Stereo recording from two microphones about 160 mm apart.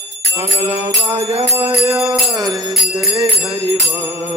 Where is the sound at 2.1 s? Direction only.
25° right (ahead or behind).